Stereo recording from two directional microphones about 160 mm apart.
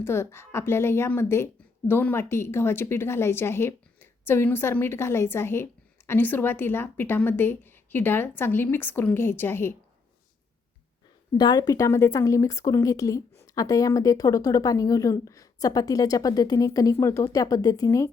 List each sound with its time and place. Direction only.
0.0 s a woman's voice: 15° left (ahead or behind)
11.3 s a woman's voice: 25° left (ahead or behind)